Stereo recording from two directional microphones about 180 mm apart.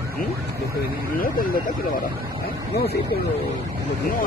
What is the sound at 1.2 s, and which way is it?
Speech, 50° left (ahead or behind).